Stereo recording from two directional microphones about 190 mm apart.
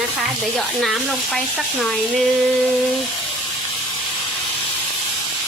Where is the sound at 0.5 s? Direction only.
Centre (ahead or behind).